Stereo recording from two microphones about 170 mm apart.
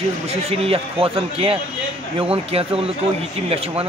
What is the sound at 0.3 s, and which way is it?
A man's voice, 35° right (ahead or behind).